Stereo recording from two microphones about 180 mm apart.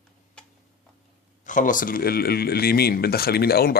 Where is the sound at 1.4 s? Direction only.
45° left (ahead or behind).